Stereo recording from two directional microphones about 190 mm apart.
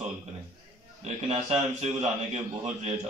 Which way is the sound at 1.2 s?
35° right (ahead or behind).